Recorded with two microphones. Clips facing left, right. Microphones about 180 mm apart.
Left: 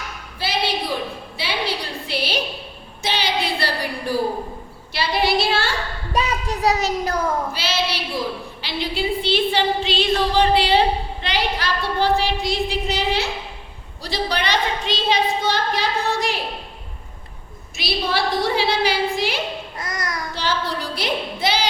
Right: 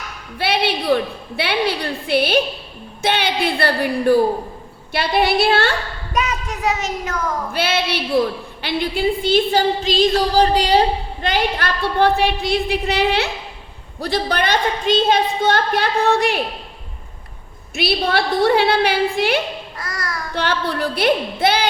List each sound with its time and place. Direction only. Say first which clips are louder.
0.3 s a sound: right 4 dB; 65° right (ahead or behind)
1.4 s a woman's voice: right 6 dB; 60° right (ahead or behind)
6.1 s a child's voice: even; 30° left (ahead or behind)
7.5 s a woman's voice: right 4 dB; 55° right (ahead or behind)
14.0 s a woman's voice: right 4 dB; 55° right (ahead or behind)
17.7 s a woman's voice: right 4 dB; 60° right (ahead or behind)
19.8 s a child's voice: even; 20° left (ahead or behind)
20.3 s a woman's voice: right 4 dB; 60° right (ahead or behind)